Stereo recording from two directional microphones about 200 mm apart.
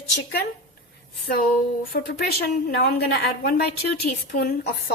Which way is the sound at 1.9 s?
50° left (ahead or behind).